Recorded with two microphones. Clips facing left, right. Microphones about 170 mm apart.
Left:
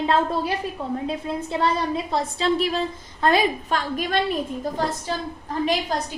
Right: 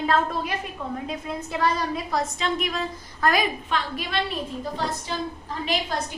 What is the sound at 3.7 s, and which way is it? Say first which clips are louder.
Speech: left 4 dB; 45° left (ahead or behind).